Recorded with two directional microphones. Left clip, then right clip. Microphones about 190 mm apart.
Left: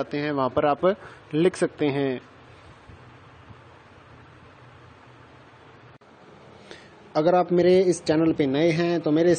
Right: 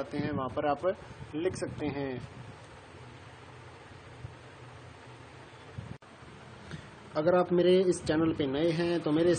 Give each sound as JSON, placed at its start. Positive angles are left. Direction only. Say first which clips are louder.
{"t": 0.0, "sound": "speech", "louder": "left 9 dB", "side_deg": 35}
{"t": 7.2, "sound": "speech", "louder": "left 6 dB", "side_deg": 35}